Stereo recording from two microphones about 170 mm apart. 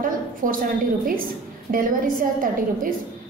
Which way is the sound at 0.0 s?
55° right (ahead or behind).